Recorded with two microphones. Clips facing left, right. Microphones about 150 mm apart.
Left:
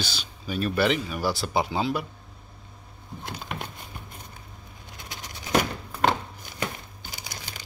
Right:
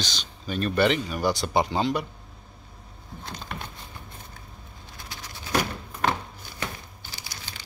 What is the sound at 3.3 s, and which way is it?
Speech, 10° left (ahead or behind).